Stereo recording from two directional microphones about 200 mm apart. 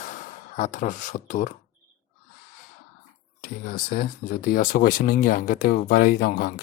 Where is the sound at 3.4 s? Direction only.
45° left (ahead or behind).